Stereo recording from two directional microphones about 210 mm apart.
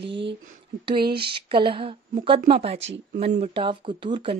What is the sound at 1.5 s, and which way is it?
Speech, 25° right (ahead or behind).